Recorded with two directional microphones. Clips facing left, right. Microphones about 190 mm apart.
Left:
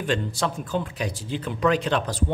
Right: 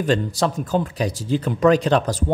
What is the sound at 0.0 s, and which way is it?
Speech, 40° right (ahead or behind).